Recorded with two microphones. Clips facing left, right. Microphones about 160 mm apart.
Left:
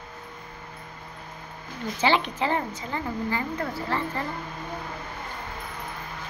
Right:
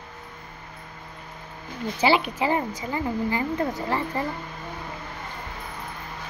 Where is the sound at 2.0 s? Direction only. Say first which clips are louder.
Right 2 dB; 10° right (ahead or behind).